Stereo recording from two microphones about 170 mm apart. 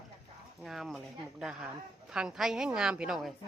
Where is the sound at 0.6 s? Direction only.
Centre (ahead or behind).